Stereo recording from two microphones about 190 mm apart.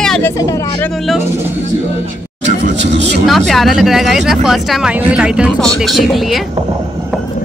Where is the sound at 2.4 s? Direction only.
65° right (ahead or behind).